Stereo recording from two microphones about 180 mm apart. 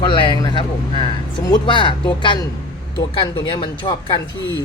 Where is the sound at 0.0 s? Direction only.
25° left (ahead or behind).